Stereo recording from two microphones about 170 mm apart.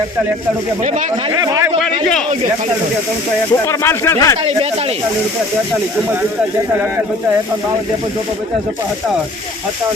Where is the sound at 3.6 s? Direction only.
15° left (ahead or behind).